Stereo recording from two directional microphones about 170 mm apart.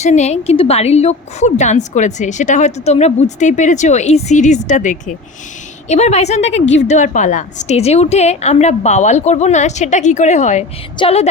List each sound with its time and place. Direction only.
0.0 s a woman's voice: 40° left (ahead or behind)